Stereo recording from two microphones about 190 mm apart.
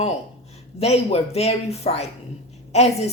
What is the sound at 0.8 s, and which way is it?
A woman's voice, 30° left (ahead or behind).